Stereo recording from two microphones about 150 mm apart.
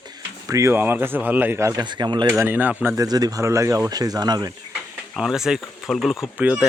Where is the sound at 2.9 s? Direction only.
25° right (ahead or behind).